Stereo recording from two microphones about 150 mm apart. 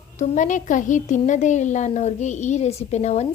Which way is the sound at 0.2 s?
55° left (ahead or behind).